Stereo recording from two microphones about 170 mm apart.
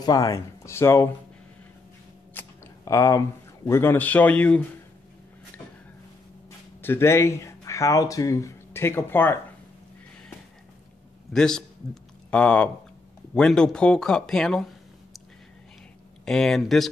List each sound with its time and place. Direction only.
0.0 s speech: 20° left (ahead or behind)
2.3 s speech: 20° left (ahead or behind)
6.8 s speech: 15° left (ahead or behind)
11.3 s speech: 5° left (ahead or behind)
16.3 s speech: 5° left (ahead or behind)